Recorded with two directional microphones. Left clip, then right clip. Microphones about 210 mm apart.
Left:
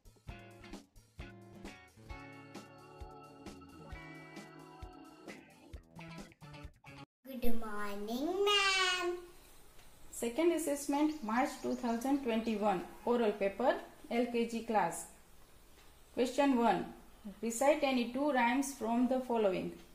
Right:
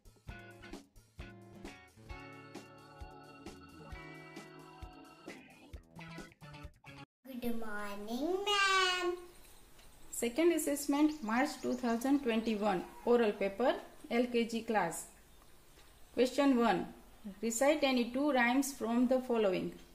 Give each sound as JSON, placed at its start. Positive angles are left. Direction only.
{"t": 0.3, "sound": "music", "side_deg": 0}
{"t": 10.2, "sound": "speech", "side_deg": -15}
{"t": 16.2, "sound": "speech", "side_deg": -15}